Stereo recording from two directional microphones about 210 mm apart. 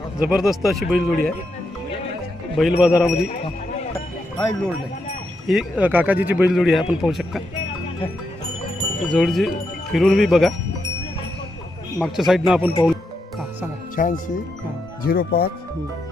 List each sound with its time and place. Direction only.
0.2 s a man's voice: 5° right (ahead or behind)
2.6 s a man's voice: centre (ahead or behind)
5.5 s a man's voice: 5° right (ahead or behind)
9.0 s a man's voice: centre (ahead or behind)
11.9 s a man's voice: centre (ahead or behind)
14.0 s speech: 40° left (ahead or behind)